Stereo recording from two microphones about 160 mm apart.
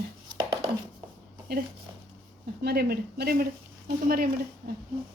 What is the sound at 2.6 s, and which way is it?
A woman's voice, 80° right.